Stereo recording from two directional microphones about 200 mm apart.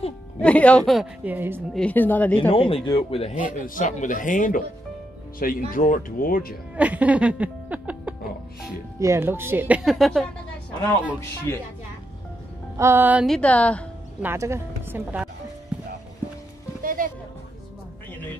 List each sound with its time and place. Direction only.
0.4 s speech: 5° left (ahead or behind); by 1.6 s 10° right (ahead or behind)
1.7 s speech: 5° left (ahead or behind)
2.5 s a man's voice: 25° left (ahead or behind)
3.3 s speech: 45° left (ahead or behind)
6.8 s a sound: 5° right (ahead or behind)
11.1 s speech: 10° left (ahead or behind)
12.7 s speech: 15° right (ahead or behind); by 13.8 s 5° left (ahead or behind)
14.2 s speech: 15° right (ahead or behind)
15.7 s clip-clop: 5° right (ahead or behind)
16.8 s music: 40° right (ahead or behind)